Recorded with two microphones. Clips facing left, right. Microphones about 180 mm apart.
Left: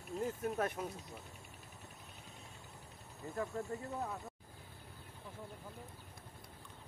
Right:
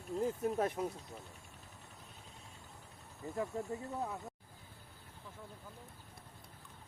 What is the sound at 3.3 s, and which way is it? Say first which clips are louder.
Speech: right 1 dB; 15° right (ahead or behind).